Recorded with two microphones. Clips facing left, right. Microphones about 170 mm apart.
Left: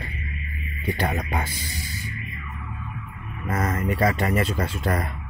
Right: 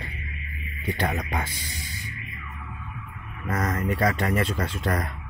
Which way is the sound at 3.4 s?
5° left (ahead or behind).